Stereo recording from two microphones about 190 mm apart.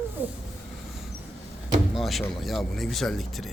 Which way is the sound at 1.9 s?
Centre (ahead or behind).